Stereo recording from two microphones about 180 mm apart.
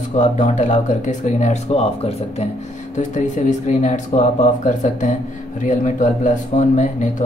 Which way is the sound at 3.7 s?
40° left (ahead or behind).